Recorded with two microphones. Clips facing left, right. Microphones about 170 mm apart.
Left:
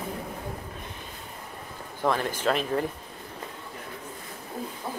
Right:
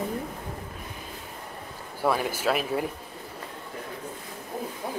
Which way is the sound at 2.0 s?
10° right (ahead or behind).